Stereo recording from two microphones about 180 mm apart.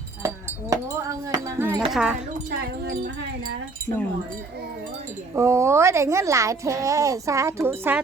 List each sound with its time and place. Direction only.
0.7 s a child's voice: 20° right (ahead or behind)
1.8 s speech: 5° right (ahead or behind)
5.3 s a child's voice: 15° right (ahead or behind)